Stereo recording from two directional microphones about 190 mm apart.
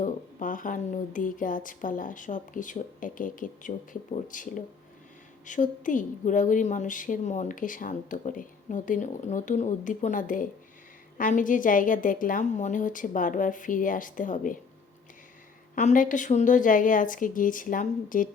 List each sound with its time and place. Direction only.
0.0 s a woman's voice: 45° left (ahead or behind)
15.7 s a woman's voice: 45° left (ahead or behind)